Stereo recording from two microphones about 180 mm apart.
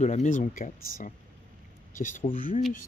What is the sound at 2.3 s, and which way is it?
Speech, 30° left (ahead or behind).